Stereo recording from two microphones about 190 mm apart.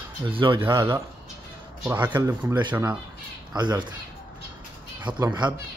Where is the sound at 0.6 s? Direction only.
15° right (ahead or behind).